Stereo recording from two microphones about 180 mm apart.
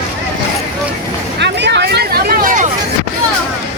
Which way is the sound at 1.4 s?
75° right (ahead or behind).